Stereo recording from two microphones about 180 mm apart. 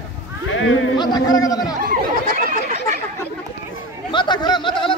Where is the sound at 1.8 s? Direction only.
50° right (ahead or behind).